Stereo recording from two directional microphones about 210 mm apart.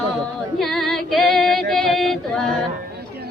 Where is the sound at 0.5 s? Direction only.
Centre (ahead or behind).